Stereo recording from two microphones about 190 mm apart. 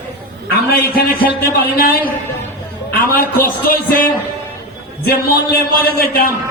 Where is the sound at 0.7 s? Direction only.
50° left (ahead or behind).